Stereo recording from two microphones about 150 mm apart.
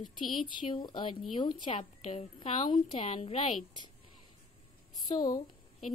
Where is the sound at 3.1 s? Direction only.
45° left (ahead or behind).